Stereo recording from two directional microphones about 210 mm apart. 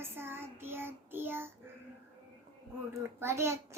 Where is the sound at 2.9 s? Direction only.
15° right (ahead or behind).